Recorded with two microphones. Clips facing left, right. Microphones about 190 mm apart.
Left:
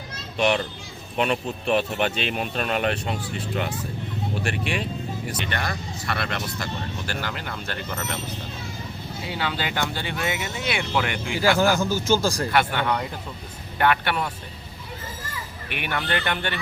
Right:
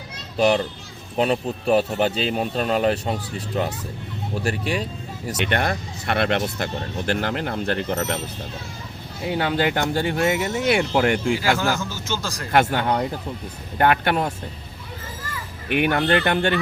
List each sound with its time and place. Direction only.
0.3 s a child's voice: 35° right (ahead or behind)
5.5 s speech: 55° right (ahead or behind)
9.2 s speech: 50° right (ahead or behind)
12.2 s speech: 30° left (ahead or behind)
12.5 s speech: 45° right (ahead or behind)
15.8 s speech: 45° right (ahead or behind)